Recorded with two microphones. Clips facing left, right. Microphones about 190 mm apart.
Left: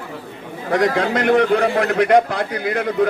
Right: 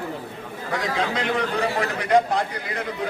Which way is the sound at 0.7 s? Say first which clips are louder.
Left 8 dB; 65° left (ahead or behind).